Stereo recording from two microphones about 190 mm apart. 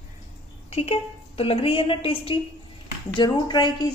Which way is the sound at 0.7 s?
30° left (ahead or behind).